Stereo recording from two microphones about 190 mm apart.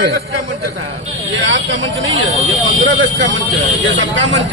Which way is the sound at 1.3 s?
80° right.